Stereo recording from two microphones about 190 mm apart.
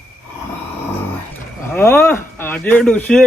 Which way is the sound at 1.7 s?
10° left (ahead or behind).